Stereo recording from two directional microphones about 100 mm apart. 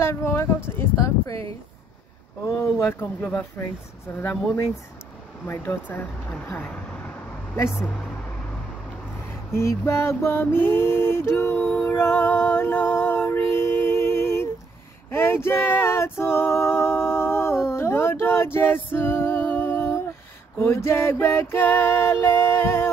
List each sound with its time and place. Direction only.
0.0 s speech: 25° left (ahead or behind)
0.7 s a sound: 25° left (ahead or behind)
2.4 s music: 25° left (ahead or behind)
5.5 s speech: 20° left (ahead or behind)
9.5 s a sound: 25° left (ahead or behind)
20.5 s music: 25° left (ahead or behind)